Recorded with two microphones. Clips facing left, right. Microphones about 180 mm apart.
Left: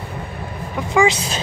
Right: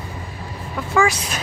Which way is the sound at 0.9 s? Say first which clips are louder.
Left 2 dB; 20° left (ahead or behind).